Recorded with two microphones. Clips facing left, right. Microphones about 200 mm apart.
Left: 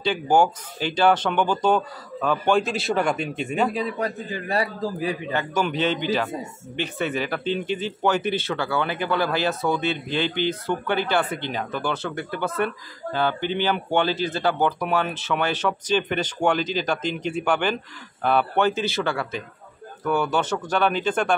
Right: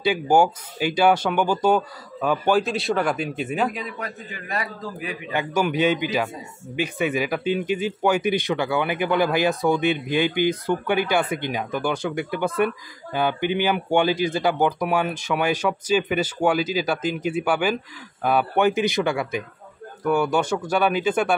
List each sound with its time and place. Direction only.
0.0 s speech: 10° right (ahead or behind)
3.7 s a man's voice: 35° left (ahead or behind)
5.3 s speech: 10° right (ahead or behind)